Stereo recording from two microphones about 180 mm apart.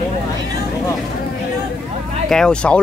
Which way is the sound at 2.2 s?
5° left (ahead or behind).